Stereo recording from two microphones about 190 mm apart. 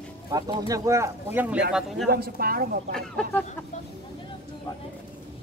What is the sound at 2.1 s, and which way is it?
Speech, 55° right (ahead or behind).